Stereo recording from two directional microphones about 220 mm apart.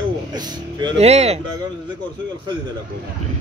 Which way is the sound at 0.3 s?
20° right (ahead or behind).